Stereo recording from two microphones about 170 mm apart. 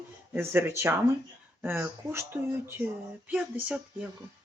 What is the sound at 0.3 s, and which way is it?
Speech, 15° right (ahead or behind).